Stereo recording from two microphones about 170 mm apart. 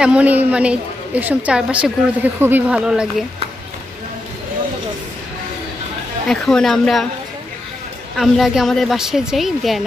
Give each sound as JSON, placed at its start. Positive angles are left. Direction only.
{"t": 0.0, "sound": "a woman's voice", "side_deg": -10}
{"t": 6.2, "sound": "a woman's voice", "side_deg": 5}
{"t": 8.2, "sound": "a woman's voice", "side_deg": 0}